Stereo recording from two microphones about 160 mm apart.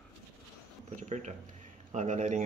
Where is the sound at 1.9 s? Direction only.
50° right (ahead or behind).